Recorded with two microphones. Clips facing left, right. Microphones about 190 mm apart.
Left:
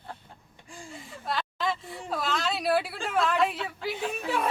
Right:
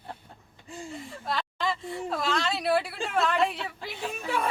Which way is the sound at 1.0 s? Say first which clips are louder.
Left 2 dB; centre (ahead or behind).